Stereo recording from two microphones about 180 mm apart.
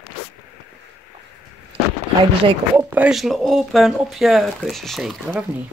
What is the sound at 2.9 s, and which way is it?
Speech, 5° right (ahead or behind).